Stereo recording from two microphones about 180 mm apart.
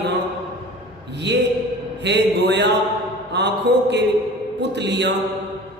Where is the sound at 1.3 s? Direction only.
75° right (ahead or behind).